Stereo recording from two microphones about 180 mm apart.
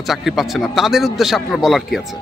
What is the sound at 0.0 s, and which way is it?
A man's voice, centre (ahead or behind).